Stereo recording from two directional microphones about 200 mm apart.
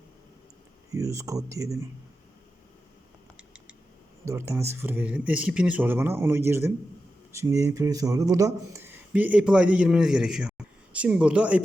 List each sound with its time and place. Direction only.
0.9 s speech: 15° right (ahead or behind)
4.3 s speech: 15° right (ahead or behind)